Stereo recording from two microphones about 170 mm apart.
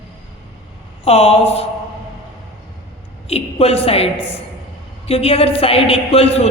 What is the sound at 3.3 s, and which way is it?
A woman's voice, 35° left (ahead or behind).